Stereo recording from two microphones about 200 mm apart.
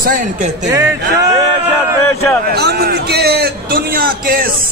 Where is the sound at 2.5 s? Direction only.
55° right (ahead or behind).